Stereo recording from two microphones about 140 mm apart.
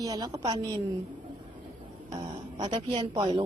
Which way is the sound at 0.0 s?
30° right (ahead or behind).